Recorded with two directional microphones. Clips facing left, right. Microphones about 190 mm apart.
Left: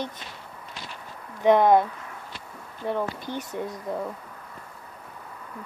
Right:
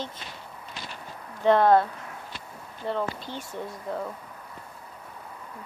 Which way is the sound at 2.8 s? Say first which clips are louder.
Left 2 dB; 15° left (ahead or behind).